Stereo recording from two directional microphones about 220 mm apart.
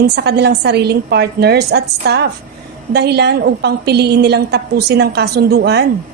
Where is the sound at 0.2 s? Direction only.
50° right (ahead or behind).